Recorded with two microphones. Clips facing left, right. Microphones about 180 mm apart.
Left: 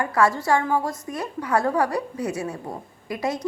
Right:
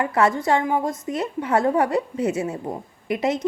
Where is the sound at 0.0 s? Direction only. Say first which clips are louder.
Right 1 dB; 20° right (ahead or behind).